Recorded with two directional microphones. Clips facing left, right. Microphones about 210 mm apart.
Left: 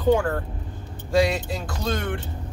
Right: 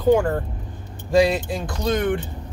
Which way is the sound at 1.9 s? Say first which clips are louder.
Right 6 dB; 15° right (ahead or behind).